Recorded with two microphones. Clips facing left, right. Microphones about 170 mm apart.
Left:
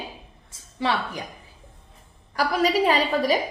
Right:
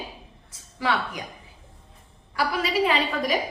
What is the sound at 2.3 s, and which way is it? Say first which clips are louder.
A woman's voice: left 3 dB; 40° left (ahead or behind).